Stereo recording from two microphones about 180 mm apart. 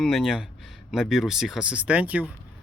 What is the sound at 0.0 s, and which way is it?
Speech, centre (ahead or behind).